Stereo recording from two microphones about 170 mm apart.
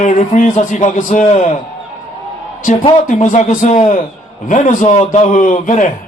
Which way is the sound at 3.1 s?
45° left (ahead or behind).